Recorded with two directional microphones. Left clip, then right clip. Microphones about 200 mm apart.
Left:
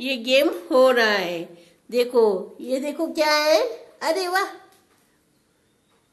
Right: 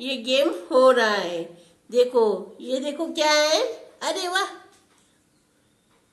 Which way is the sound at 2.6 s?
85° left.